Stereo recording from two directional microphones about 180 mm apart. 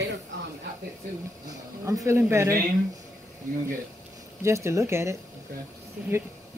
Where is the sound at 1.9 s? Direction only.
15° right (ahead or behind).